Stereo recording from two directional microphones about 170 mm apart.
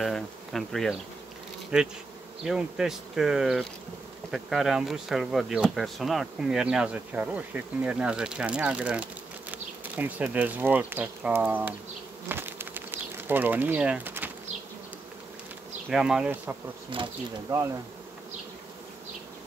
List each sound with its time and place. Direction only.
0.0 s speech: centre (ahead or behind)
12.3 s bee: 10° right (ahead or behind)
15.9 s speech: 5° right (ahead or behind)
16.9 s speech: 30° right (ahead or behind)
17.5 s speech: 15° right (ahead or behind)